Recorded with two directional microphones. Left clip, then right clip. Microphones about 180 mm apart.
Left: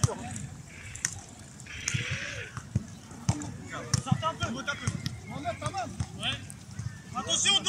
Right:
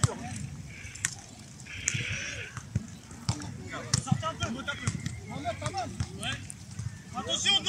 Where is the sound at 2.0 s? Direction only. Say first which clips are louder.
Even; 50° right (ahead or behind).